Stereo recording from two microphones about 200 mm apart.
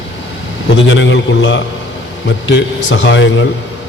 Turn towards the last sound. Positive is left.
turn(degrees=65)  # may be behind; listen again after turning